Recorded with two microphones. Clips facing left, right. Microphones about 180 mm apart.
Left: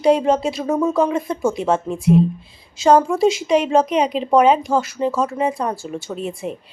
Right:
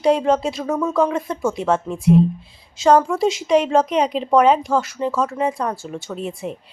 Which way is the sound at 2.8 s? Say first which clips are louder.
Left 1 dB; 5° left (ahead or behind).